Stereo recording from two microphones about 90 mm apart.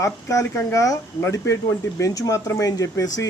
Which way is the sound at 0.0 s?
35° left (ahead or behind).